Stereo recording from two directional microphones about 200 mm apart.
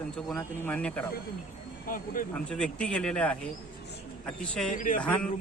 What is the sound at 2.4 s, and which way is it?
Speech, 5° left (ahead or behind).